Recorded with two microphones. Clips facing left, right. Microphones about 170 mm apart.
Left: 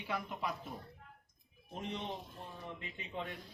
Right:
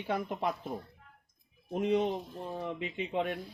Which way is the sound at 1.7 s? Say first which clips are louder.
Right 14 dB; 90° right.